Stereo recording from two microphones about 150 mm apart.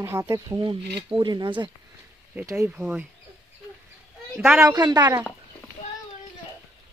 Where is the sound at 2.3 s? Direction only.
20° right (ahead or behind).